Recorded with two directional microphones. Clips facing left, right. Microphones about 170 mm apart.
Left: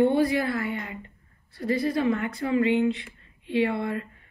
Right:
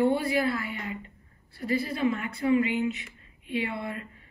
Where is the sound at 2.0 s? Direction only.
25° left (ahead or behind).